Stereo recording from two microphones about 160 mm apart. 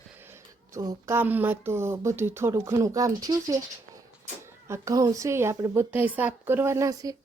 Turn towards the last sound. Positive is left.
turn(degrees=-20)  # may be behind; listen again after turning